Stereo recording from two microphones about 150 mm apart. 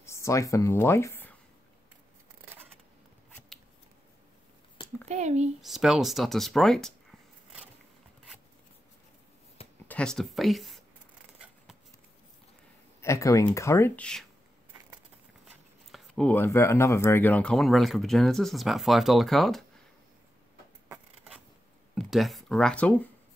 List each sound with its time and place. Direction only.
0.0 s speech: 20° left (ahead or behind)
5.0 s a sound: 50° right (ahead or behind)
5.6 s speech: centre (ahead or behind)
9.8 s speech: 5° left (ahead or behind)
11.3 s a sound: 5° right (ahead or behind)
13.0 s speech: 20° left (ahead or behind)
15.9 s speech: 5° left (ahead or behind)
21.9 s speech: centre (ahead or behind)